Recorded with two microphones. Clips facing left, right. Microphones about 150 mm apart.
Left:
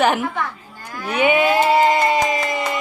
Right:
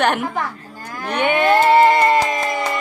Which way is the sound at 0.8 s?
45° right (ahead or behind).